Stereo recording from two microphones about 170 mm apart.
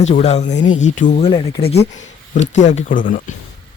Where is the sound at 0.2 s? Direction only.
40° left (ahead or behind).